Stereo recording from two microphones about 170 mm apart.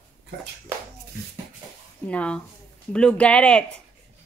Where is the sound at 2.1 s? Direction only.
5° left (ahead or behind).